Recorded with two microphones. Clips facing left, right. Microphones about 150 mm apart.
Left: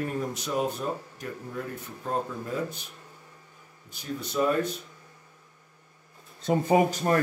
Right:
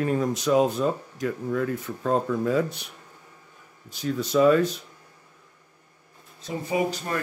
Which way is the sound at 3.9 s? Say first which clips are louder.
Right 8 dB; 90° right.